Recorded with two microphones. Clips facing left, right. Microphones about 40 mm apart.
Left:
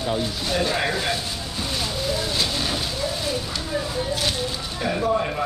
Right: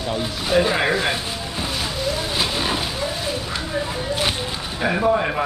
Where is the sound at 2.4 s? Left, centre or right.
Centre.